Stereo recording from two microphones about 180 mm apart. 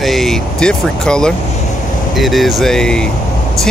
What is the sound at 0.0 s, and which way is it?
Speech, centre (ahead or behind).